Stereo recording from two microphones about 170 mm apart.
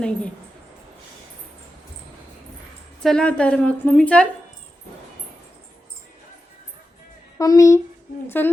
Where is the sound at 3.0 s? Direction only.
5° left (ahead or behind).